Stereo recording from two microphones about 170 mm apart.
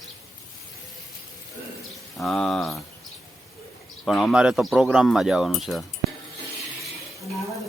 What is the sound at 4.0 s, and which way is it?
Speech, centre (ahead or behind).